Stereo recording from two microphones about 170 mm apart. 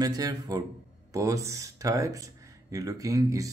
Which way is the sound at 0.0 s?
20° right (ahead or behind).